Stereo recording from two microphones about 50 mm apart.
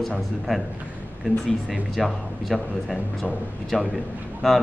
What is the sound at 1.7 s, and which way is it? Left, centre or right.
A woman's voice, centre.